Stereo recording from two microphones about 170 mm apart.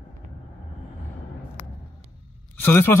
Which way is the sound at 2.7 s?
15° left (ahead or behind).